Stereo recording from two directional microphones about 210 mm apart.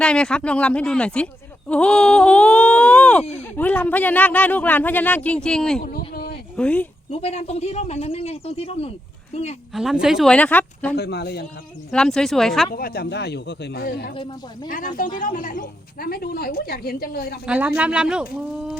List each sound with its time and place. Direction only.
0.0 s speech: 5° left (ahead or behind)
7.1 s a woman's voice: 30° left (ahead or behind)
9.7 s speech: 5° right (ahead or behind)
10.9 s speech: 50° left (ahead or behind)
11.9 s speech: 5° left (ahead or behind)
12.7 s speech: 45° left (ahead or behind)
14.1 s speech: 25° left (ahead or behind)
15.2 s speech: 40° left (ahead or behind)
17.4 s speech: 5° right (ahead or behind)